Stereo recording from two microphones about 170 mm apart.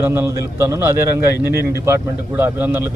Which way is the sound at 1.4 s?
65° right (ahead or behind).